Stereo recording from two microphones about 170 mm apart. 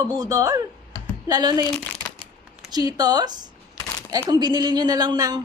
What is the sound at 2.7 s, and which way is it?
A woman's voice, 20° right (ahead or behind).